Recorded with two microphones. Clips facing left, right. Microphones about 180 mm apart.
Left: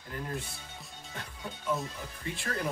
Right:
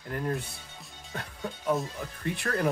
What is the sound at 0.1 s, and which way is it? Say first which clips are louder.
Speech: right 6 dB; 60° right (ahead or behind).